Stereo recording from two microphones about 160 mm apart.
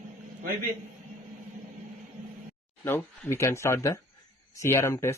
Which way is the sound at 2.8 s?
15° left (ahead or behind).